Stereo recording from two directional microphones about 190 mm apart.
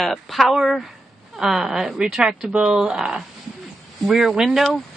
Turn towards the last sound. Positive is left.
turn(degrees=0)  # may be behind; listen again after turning